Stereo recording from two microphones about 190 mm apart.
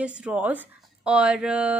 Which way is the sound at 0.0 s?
5° right (ahead or behind).